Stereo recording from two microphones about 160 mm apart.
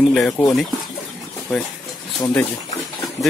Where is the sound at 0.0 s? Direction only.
Centre (ahead or behind).